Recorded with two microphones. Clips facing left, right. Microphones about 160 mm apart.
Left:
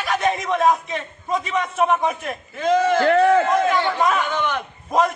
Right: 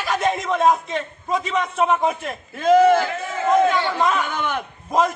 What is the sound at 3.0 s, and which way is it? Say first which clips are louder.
Speech: left 11 dB; 65° left (ahead or behind).